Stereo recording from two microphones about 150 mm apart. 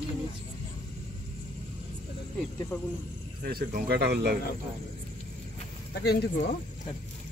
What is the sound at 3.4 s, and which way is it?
Speech, 85° right.